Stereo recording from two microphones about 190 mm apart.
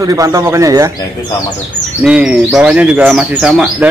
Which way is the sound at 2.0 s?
5° right (ahead or behind).